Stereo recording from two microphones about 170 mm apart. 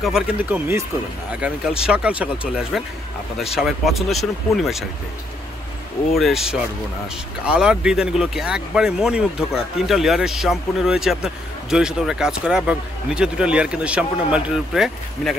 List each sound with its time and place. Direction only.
0.0 s speech: 5° right (ahead or behind)
6.1 s speech: centre (ahead or behind)